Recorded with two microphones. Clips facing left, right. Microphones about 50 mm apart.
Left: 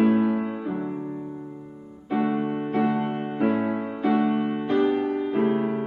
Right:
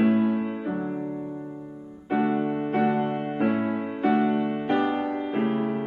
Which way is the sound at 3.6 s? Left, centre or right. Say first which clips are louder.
Left 1 dB; centre.